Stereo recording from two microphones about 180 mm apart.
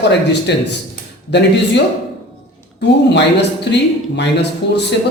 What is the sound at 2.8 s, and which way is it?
Speech, 70° left (ahead or behind).